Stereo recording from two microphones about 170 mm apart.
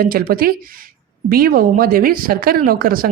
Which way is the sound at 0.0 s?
60° right (ahead or behind).